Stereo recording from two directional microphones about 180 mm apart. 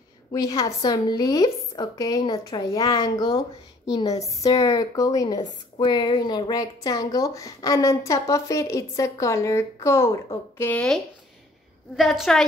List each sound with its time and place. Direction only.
0.3 s a woman's voice: 20° left (ahead or behind)
12.0 s a woman's voice: centre (ahead or behind)